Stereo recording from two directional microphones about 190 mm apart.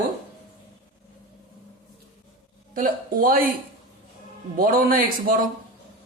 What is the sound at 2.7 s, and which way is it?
Speech, 45° right (ahead or behind).